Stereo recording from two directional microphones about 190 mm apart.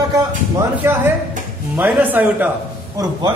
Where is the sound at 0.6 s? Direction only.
10° right (ahead or behind).